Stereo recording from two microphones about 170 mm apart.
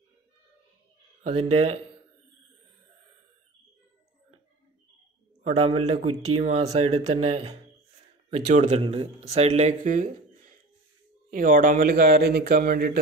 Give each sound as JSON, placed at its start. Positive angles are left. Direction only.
{"t": 1.2, "sound": "speech", "side_deg": -40}
{"t": 5.4, "sound": "speech", "side_deg": -35}